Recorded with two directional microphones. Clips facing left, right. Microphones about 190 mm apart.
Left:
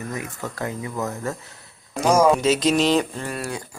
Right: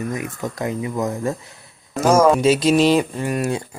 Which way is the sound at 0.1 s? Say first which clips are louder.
Right 4 dB; 15° right (ahead or behind).